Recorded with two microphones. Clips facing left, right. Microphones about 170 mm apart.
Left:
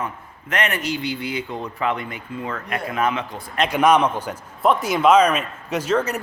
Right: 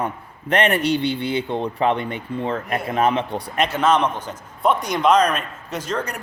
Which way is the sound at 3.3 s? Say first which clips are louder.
Right 7 dB; 70° right (ahead or behind).